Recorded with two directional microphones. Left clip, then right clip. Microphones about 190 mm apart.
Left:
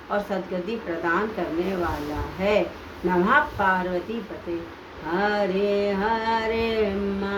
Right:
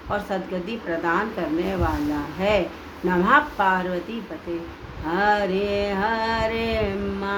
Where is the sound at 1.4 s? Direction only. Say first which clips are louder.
Right 1 dB; 30° right (ahead or behind).